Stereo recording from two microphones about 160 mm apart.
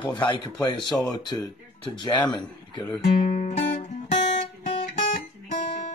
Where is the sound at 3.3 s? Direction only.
45° left (ahead or behind).